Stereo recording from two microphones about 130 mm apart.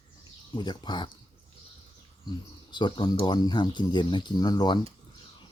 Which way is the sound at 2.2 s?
35° left (ahead or behind).